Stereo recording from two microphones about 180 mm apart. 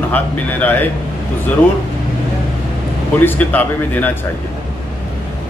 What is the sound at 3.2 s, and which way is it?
A man's voice, 10° left (ahead or behind).